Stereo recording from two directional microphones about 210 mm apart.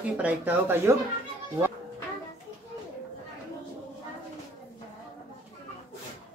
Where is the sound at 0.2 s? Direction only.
10° right (ahead or behind).